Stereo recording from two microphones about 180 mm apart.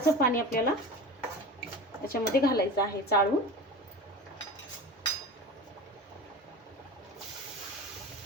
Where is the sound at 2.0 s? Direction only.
55° left (ahead or behind).